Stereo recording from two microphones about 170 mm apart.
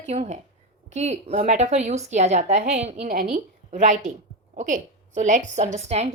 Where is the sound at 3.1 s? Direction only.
55° right (ahead or behind).